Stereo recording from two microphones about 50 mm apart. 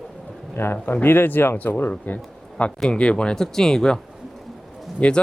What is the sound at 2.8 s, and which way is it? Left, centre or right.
Speech, left.